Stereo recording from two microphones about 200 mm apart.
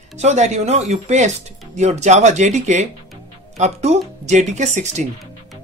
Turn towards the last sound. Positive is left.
turn(degrees=-35)  # may be behind; listen again after turning